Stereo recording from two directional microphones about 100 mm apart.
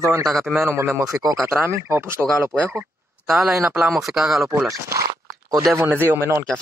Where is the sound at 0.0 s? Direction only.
35° right (ahead or behind).